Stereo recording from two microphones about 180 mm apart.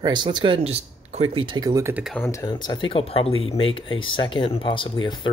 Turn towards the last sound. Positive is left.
turn(degrees=25)  # may be behind; listen again after turning